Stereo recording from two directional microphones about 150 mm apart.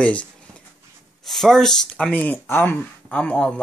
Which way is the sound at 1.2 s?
Centre (ahead or behind).